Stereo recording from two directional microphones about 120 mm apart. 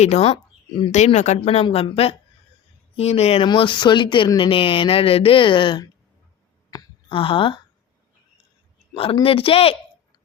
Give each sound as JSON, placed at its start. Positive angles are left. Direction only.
{"t": 0.0, "sound": "speech", "side_deg": 65}
{"t": 0.9, "sound": "speech", "side_deg": 75}
{"t": 1.4, "sound": "speech", "side_deg": 50}
{"t": 3.4, "sound": "speech", "side_deg": 45}
{"t": 6.7, "sound": "a sound", "side_deg": 30}
{"t": 7.1, "sound": "speech", "side_deg": 45}
{"t": 9.2, "sound": "speech", "side_deg": 50}